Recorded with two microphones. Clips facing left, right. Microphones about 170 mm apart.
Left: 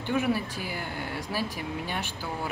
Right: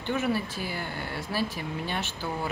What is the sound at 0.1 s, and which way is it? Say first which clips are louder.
Speech: left 1 dB; 10° left (ahead or behind).